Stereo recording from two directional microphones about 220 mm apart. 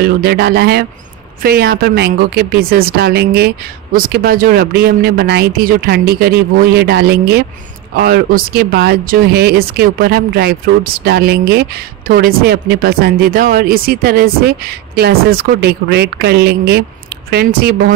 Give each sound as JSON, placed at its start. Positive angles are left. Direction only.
{"t": 0.0, "sound": "speech", "side_deg": -45}